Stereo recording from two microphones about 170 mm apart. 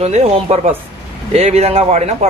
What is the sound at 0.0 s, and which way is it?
A man's voice, 40° right (ahead or behind).